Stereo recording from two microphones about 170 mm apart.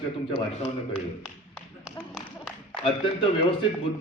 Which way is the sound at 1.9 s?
Centre (ahead or behind).